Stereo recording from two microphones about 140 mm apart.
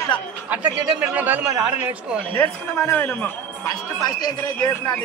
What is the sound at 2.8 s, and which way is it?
Speech, 15° left (ahead or behind).